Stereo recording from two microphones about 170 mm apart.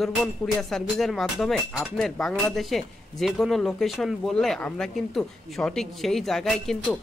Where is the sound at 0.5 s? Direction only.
Centre (ahead or behind).